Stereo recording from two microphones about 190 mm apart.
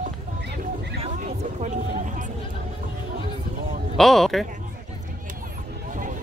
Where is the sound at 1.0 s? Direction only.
35° right (ahead or behind).